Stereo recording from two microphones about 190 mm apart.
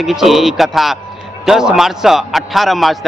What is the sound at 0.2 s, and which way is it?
A man's voice, centre (ahead or behind).